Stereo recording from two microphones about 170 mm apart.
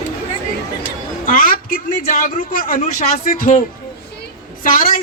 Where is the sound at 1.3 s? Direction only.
55° left (ahead or behind).